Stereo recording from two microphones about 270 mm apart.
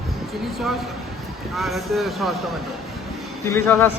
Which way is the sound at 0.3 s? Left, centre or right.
Centre.